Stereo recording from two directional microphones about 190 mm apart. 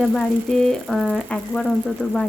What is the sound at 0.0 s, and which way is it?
Speech, centre (ahead or behind).